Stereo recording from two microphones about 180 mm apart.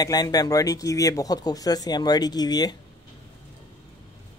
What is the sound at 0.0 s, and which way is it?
Speech, 20° left (ahead or behind).